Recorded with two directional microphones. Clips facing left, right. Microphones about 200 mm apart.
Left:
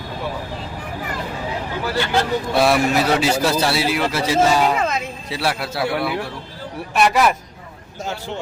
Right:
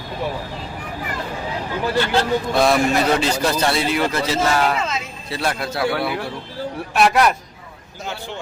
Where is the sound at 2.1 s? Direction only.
5° left (ahead or behind).